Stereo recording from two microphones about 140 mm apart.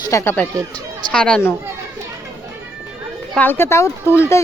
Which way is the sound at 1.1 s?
5° left (ahead or behind).